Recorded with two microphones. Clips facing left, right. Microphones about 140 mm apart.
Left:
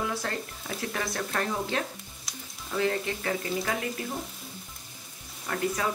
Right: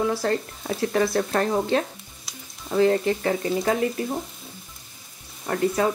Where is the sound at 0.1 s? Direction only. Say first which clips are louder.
Right 9 dB; 30° right (ahead or behind).